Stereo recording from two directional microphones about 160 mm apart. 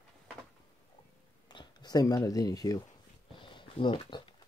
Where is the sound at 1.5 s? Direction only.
25° left (ahead or behind).